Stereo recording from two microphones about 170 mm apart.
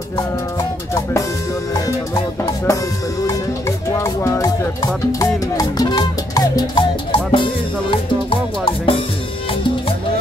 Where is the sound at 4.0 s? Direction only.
15° left (ahead or behind).